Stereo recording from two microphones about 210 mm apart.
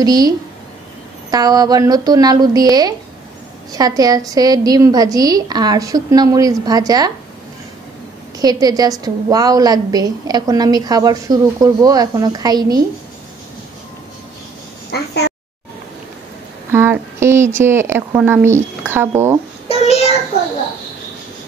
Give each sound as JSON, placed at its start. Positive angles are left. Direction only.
{"t": 0.0, "sound": "a woman's voice", "side_deg": -20}
{"t": 1.3, "sound": "a woman's voice", "side_deg": -20}
{"t": 8.4, "sound": "a woman's voice", "side_deg": -20}
{"t": 14.9, "sound": "a sound", "side_deg": 50}
{"t": 16.7, "sound": "a sound", "side_deg": -10}
{"t": 17.6, "sound": "a woman's voice", "side_deg": -10}